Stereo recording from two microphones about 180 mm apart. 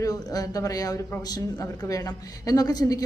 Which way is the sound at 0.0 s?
20° left (ahead or behind).